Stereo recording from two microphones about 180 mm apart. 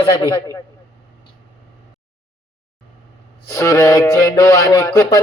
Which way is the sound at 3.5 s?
15° left (ahead or behind).